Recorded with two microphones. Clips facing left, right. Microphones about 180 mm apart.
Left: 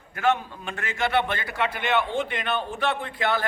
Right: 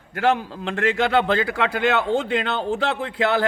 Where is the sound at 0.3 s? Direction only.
90° right.